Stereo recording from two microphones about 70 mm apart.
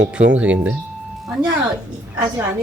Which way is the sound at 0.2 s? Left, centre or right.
Centre.